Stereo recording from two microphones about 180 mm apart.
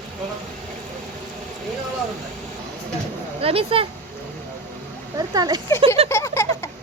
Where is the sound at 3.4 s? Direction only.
30° right (ahead or behind).